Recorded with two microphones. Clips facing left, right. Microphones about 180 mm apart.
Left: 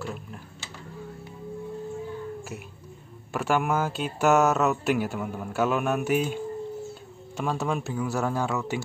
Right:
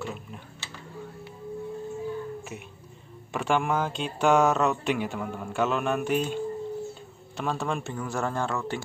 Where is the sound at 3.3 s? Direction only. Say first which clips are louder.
Left 1 dB; 5° left (ahead or behind).